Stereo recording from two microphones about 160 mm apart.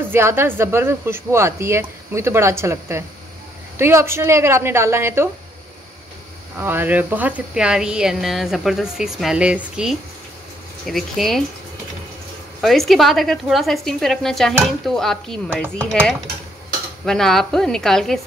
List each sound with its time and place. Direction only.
0.1 s speech: 15° right (ahead or behind)
6.6 s speech: 10° right (ahead or behind)
12.6 s speech: centre (ahead or behind)